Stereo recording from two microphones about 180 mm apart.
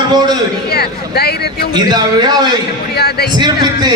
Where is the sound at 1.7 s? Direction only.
20° right (ahead or behind).